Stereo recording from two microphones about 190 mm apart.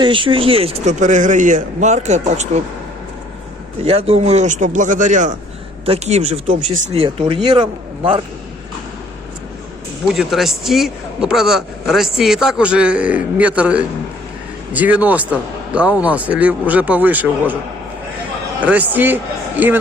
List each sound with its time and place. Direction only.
0.0 s a man's voice: 25° right (ahead or behind)
3.8 s a man's voice: 30° right (ahead or behind)
10.1 s a man's voice: centre (ahead or behind)
18.6 s speech: 10° right (ahead or behind)